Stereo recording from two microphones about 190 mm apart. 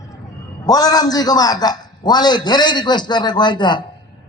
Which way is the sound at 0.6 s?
20° left (ahead or behind).